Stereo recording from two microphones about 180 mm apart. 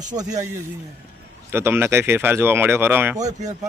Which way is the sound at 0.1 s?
20° right (ahead or behind).